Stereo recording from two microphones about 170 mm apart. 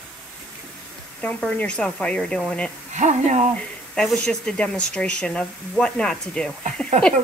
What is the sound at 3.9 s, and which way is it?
Speech, 5° left (ahead or behind).